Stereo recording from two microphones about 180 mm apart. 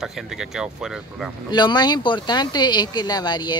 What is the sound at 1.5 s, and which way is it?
Speech, 25° left (ahead or behind).